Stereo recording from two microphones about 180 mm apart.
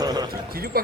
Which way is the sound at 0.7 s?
60° right (ahead or behind).